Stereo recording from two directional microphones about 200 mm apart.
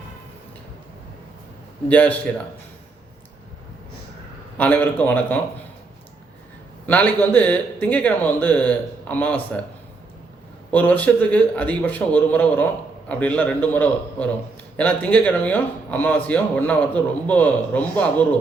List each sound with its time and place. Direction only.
1.9 s speech: 10° left (ahead or behind)
4.5 s speech: 10° left (ahead or behind)
6.8 s speech: 10° left (ahead or behind)
10.7 s speech: 10° left (ahead or behind)